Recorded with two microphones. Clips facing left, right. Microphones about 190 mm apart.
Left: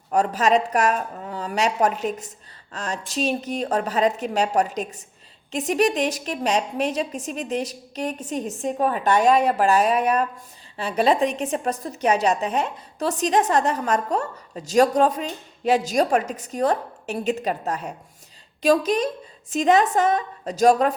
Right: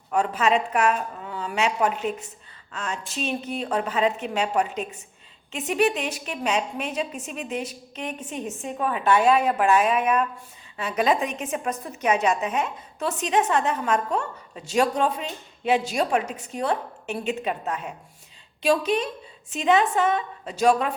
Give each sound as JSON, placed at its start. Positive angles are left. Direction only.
{"t": 0.1, "sound": "a woman's voice", "side_deg": 40}